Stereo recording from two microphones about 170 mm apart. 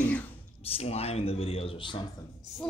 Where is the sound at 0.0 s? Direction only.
10° left (ahead or behind).